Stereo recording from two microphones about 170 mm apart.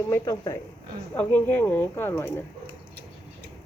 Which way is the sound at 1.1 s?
10° left (ahead or behind).